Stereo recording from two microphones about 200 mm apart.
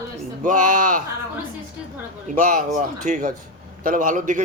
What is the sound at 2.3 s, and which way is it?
A man's voice, 40° right (ahead or behind).